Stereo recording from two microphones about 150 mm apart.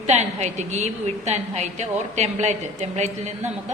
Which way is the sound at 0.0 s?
50° right (ahead or behind).